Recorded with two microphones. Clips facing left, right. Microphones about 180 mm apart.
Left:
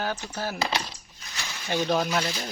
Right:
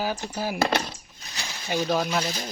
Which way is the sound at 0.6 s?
55° right (ahead or behind).